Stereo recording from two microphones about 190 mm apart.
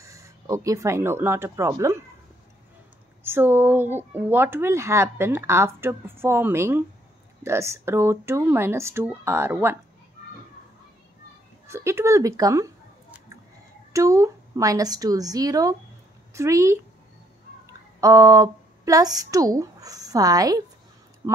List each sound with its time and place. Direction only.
0.0 s speech: 15° right (ahead or behind)
3.3 s speech: 10° right (ahead or behind)
11.6 s a sound: 15° right (ahead or behind)
13.9 s speech: 15° right (ahead or behind)
18.0 s a woman's voice: 15° right (ahead or behind)